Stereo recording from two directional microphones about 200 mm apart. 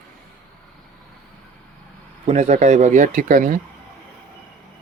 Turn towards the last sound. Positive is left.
turn(degrees=-40)  # may be behind; listen again after turning